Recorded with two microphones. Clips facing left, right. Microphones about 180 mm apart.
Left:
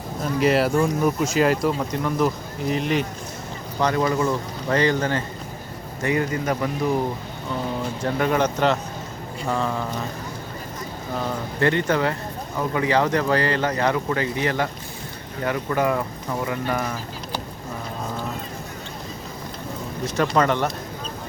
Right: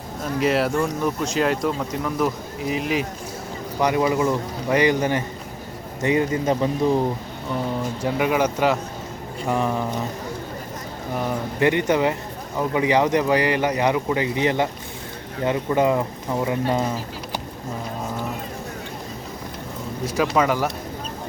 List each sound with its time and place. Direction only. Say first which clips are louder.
0.3 s speech: left 1 dB; centre (ahead or behind)
3.8 s speech: right 1 dB; 15° right (ahead or behind)
8.0 s speech: even; 10° right (ahead or behind)
11.1 s speech: right 2 dB; 15° right (ahead or behind)
20.1 s speech: even; 5° right (ahead or behind)